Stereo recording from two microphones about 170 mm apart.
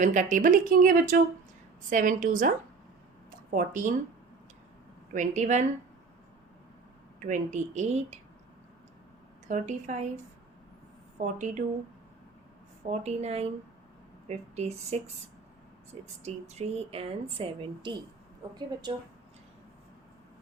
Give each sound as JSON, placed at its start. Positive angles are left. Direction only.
{"t": 0.0, "sound": "speech", "side_deg": -45}
{"t": 3.5, "sound": "speech", "side_deg": -50}
{"t": 5.1, "sound": "speech", "side_deg": -45}
{"t": 7.2, "sound": "speech", "side_deg": -45}
{"t": 9.5, "sound": "speech", "side_deg": -45}
{"t": 11.2, "sound": "speech", "side_deg": -45}
{"t": 12.9, "sound": "a woman's voice", "side_deg": -40}